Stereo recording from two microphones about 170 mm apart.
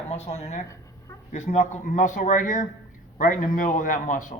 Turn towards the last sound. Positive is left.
turn(degrees=50)  # may be behind; listen again after turning